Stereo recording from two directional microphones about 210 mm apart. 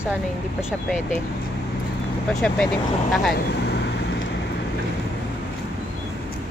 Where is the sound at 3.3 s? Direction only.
50° left (ahead or behind).